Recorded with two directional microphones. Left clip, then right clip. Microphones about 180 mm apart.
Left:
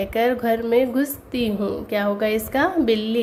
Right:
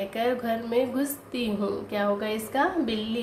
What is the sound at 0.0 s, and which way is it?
A woman's voice, 40° left (ahead or behind).